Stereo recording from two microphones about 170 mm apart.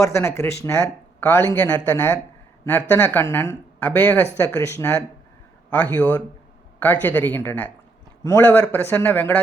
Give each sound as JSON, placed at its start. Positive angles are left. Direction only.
{"t": 0.0, "sound": "speech", "side_deg": 15}